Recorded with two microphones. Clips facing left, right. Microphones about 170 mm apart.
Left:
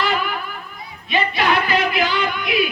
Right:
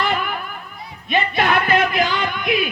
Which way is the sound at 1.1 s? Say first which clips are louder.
Right 1 dB; 50° right (ahead or behind).